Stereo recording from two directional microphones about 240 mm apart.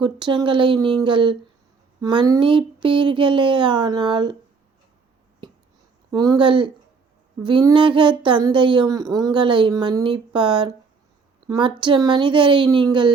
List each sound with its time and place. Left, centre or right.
0.0 s speech: centre
6.1 s speech: centre